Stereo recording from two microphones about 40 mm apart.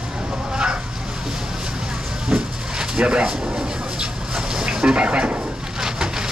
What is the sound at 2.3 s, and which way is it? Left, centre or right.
Train, centre.